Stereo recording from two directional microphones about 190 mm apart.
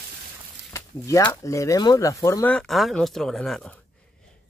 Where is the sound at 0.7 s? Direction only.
15° left (ahead or behind).